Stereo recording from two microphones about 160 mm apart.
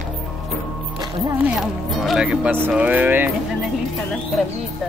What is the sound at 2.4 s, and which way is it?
Speech, 15° right (ahead or behind).